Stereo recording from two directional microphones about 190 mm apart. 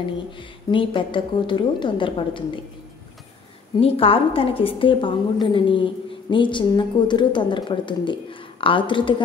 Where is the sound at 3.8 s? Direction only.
30° left (ahead or behind).